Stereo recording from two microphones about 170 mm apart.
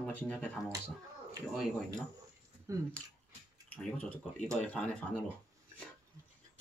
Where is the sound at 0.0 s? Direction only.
5° left (ahead or behind).